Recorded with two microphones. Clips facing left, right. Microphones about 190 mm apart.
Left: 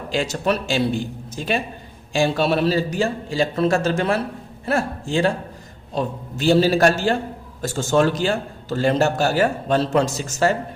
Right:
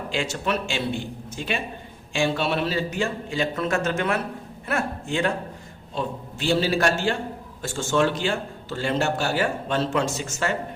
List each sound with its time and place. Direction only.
0.1 s a man's voice: 40° left (ahead or behind)